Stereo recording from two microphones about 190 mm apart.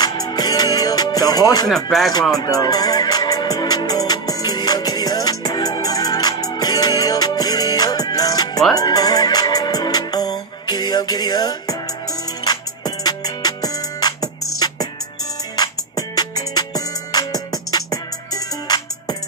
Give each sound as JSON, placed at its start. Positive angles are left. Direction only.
{"t": 0.0, "sound": "music", "side_deg": 20}
{"t": 1.9, "sound": "speech", "side_deg": 0}
{"t": 2.3, "sound": "music", "side_deg": 20}
{"t": 16.2, "sound": "music", "side_deg": 20}